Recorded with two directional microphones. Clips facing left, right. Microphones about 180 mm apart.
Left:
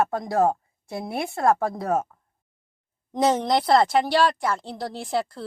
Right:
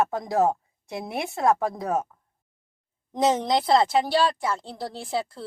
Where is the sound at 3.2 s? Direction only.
Centre (ahead or behind).